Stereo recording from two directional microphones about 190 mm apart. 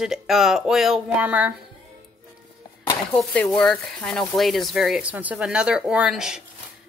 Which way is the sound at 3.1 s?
5° left (ahead or behind).